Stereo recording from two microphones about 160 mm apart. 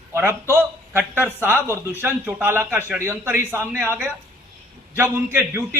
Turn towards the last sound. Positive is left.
turn(degrees=-15)  # may be behind; listen again after turning